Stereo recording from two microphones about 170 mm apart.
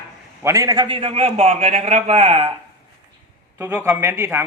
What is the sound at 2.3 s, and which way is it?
Speech, 30° right (ahead or behind).